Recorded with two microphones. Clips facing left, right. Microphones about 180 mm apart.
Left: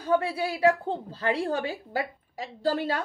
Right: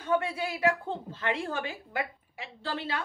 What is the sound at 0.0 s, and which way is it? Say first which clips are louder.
Speech: left 3 dB; 30° left (ahead or behind).